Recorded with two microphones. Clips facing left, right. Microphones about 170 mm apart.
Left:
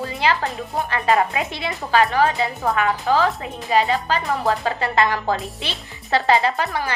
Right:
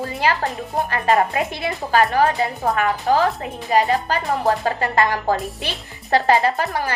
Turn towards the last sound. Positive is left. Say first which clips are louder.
# right 1 dB
turn(degrees=-40)  # may be behind; listen again after turning